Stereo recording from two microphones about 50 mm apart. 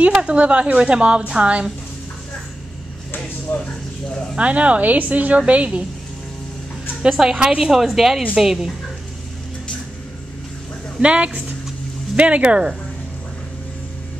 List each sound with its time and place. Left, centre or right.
0.2 s a woman's voice: right
3.5 s speech: left
4.4 s a woman's voice: right
7.0 s a woman's voice: centre
11.0 s a woman's voice: right